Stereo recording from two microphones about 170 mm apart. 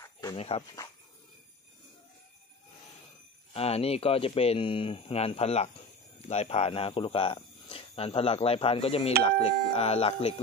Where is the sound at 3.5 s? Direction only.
35° left (ahead or behind).